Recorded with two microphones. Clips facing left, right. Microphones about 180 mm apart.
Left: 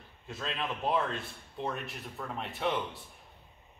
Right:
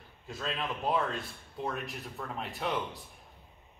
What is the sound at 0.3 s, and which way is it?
Speech, centre (ahead or behind).